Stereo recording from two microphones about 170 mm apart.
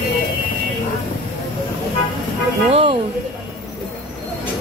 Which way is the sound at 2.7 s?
35° right (ahead or behind).